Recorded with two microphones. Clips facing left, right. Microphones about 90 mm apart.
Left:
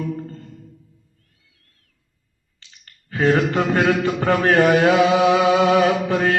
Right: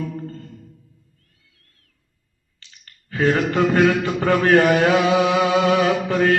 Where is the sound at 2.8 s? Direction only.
30° left (ahead or behind).